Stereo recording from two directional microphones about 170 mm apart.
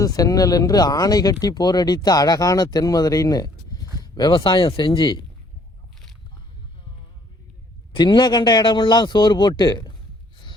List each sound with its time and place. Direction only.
0.0 s speech: 20° left (ahead or behind)
7.9 s speech: 25° left (ahead or behind)